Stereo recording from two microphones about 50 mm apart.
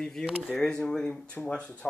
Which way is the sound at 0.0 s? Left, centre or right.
Centre.